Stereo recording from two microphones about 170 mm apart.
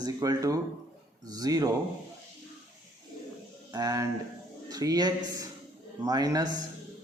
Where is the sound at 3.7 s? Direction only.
20° right (ahead or behind).